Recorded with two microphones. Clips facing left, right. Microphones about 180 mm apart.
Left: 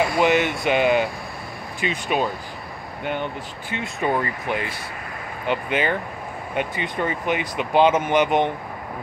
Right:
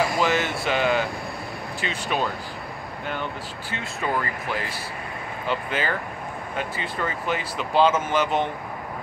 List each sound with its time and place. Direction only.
0.2 s speech: 20° left (ahead or behind)
3.7 s speech: 25° left (ahead or behind)